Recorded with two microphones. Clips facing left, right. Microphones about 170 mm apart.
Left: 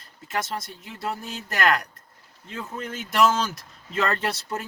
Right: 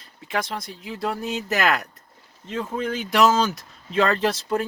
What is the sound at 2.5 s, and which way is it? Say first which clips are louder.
Speech: right 7 dB; 90° right.